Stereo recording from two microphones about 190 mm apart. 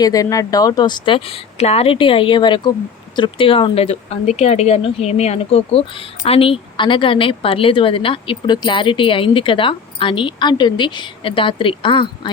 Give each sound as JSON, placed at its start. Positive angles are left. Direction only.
{"t": 0.0, "sound": "speech", "side_deg": 20}